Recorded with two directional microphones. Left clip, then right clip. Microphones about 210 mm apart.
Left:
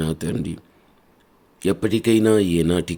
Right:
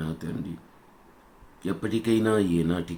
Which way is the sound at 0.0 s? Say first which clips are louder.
Left 9 dB; 50° left (ahead or behind).